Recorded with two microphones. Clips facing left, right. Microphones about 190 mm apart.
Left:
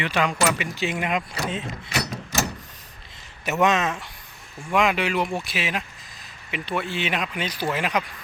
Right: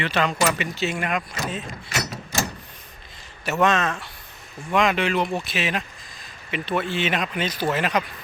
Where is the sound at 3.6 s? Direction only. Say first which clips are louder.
Even; 15° left (ahead or behind).